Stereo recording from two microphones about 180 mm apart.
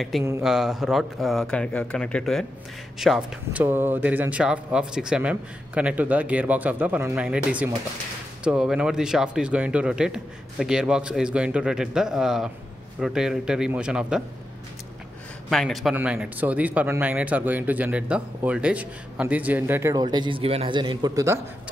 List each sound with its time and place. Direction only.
0.4 s speech: 5° right (ahead or behind)
15.5 s speech: centre (ahead or behind); by 21.4 s 20° right (ahead or behind)